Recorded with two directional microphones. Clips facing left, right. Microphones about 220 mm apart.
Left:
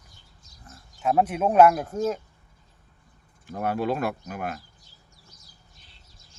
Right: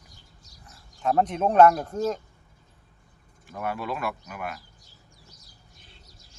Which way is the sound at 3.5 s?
40° left (ahead or behind).